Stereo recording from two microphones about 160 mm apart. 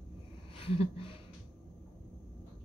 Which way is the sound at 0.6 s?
35° left (ahead or behind).